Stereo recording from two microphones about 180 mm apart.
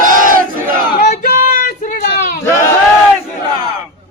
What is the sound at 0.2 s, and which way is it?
Crowd, 50° right (ahead or behind).